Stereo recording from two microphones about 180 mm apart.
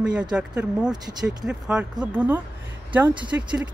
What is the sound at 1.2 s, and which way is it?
Speech, 5° right (ahead or behind).